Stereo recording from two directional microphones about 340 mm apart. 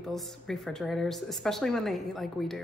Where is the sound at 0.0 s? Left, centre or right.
Centre.